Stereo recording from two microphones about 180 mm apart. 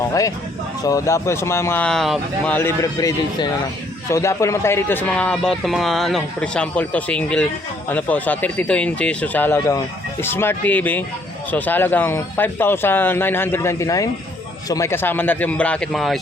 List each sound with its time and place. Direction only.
0.1 s a man's voice: 20° left (ahead or behind); by 16.2 s centre (ahead or behind)